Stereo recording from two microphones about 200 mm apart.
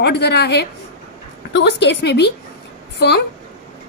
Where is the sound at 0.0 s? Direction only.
55° left (ahead or behind).